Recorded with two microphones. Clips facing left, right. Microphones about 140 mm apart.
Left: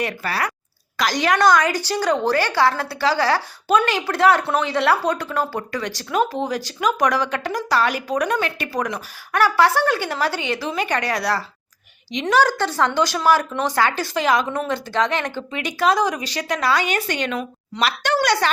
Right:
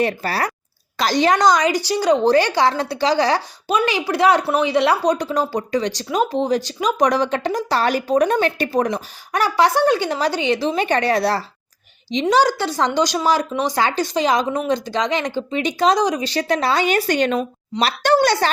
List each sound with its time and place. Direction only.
0.0 s speech: 30° right (ahead or behind)
12.2 s speech: 15° right (ahead or behind); by 18.5 s 30° right (ahead or behind)